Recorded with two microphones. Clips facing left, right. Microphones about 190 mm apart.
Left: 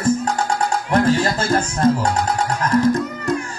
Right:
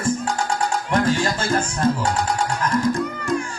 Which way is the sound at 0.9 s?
40° left (ahead or behind).